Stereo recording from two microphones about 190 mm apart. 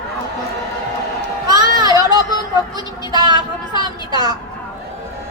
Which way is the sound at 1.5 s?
20° right (ahead or behind).